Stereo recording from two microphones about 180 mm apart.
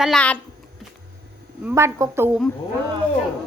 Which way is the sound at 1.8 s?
15° right (ahead or behind).